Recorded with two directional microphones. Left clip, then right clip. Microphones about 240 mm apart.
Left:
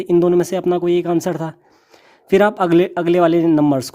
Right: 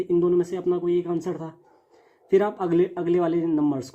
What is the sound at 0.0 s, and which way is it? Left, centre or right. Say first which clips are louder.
Speech: left 7 dB; left.